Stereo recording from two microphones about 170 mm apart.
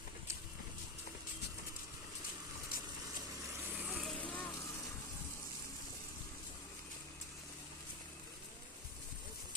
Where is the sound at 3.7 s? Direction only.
10° right (ahead or behind).